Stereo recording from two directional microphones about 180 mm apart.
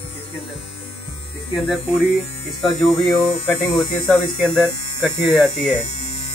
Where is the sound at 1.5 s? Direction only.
5° right (ahead or behind).